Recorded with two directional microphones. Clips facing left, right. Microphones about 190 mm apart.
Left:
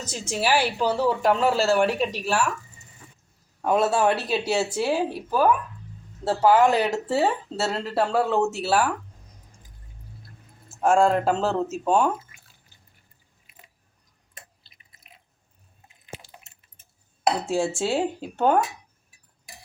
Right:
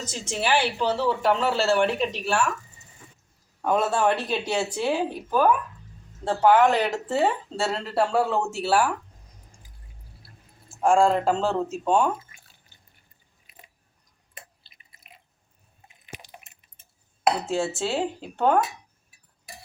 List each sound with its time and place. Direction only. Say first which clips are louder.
0.0 s speech: left 2 dB; 10° left (ahead or behind)
3.6 s speech: left 2 dB; 5° left (ahead or behind)
10.7 s speech: even; 5° left (ahead or behind)
14.3 s drip: right 2 dB; centre (ahead or behind)
16.1 s a sound: left 2 dB; 15° right (ahead or behind)
17.4 s speech: left 2 dB; 10° left (ahead or behind)